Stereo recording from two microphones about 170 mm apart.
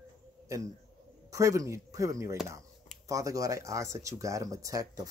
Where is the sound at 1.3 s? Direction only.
20° right (ahead or behind).